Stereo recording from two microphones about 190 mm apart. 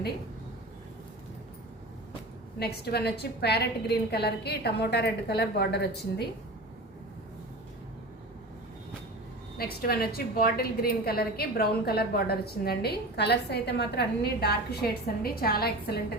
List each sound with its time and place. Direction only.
2.6 s a woman's voice: 55° left (ahead or behind)
9.6 s a woman's voice: 55° left (ahead or behind)